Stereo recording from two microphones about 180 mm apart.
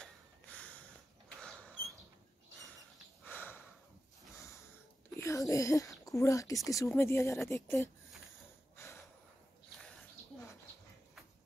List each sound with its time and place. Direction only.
0.0 s a sound: 5° left (ahead or behind)
3.3 s sniff: 10° left (ahead or behind)
5.1 s speech: 15° left (ahead or behind)
8.7 s snort: 15° left (ahead or behind)